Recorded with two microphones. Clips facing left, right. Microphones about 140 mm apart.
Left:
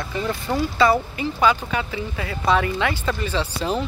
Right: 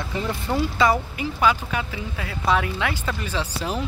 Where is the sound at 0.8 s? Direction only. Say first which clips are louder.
Left 4 dB; 10° right (ahead or behind).